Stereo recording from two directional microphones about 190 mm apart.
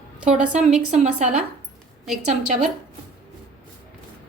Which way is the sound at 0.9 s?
40° right (ahead or behind).